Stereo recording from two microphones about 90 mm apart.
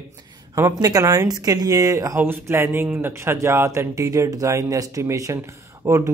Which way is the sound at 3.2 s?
30° right (ahead or behind).